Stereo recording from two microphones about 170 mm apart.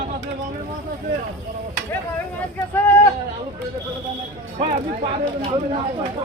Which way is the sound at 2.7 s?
10° left (ahead or behind).